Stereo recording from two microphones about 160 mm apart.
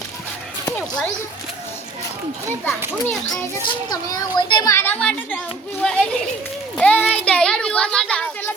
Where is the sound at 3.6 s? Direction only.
25° left (ahead or behind).